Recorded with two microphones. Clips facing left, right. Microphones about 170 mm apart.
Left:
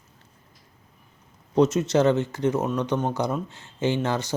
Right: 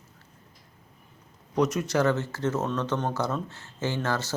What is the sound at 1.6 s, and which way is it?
Speech, 25° left (ahead or behind).